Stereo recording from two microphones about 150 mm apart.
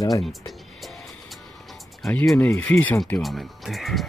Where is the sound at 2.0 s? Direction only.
Centre (ahead or behind).